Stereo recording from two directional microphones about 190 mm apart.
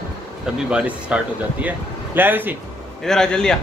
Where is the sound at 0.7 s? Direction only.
5° right (ahead or behind).